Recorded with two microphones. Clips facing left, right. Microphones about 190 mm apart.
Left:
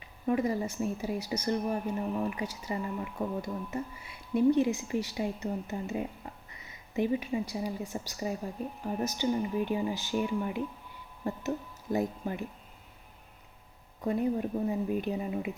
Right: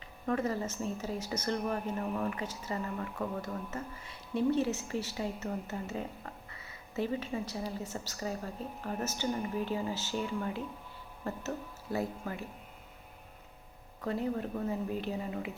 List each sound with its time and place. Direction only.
0.3 s a woman's voice: 15° left (ahead or behind)
14.0 s speech: 15° left (ahead or behind)